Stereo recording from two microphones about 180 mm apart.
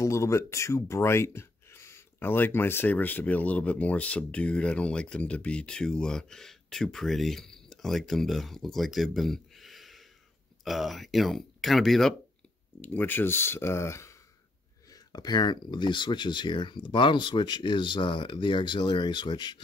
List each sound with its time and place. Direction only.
0.0 s speech: 15° left (ahead or behind)